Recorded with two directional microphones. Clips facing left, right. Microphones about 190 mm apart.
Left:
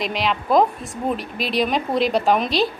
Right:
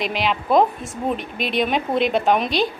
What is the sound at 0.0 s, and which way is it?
A woman's voice, centre (ahead or behind).